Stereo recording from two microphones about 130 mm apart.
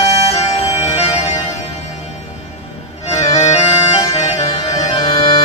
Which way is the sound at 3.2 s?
55° left (ahead or behind).